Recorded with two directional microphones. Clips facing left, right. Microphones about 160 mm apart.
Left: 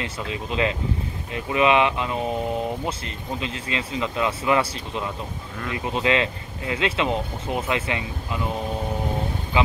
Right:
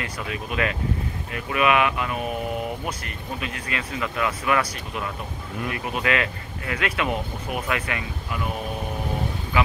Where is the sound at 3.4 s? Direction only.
25° left (ahead or behind).